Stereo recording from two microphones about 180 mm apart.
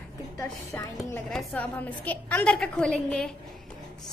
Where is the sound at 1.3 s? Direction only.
Centre (ahead or behind).